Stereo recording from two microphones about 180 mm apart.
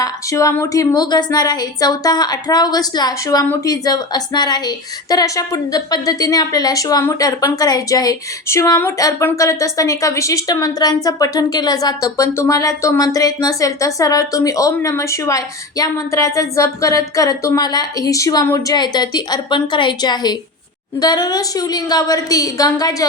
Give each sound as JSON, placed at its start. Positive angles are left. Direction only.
{"t": 0.0, "sound": "a woman's voice", "side_deg": 20}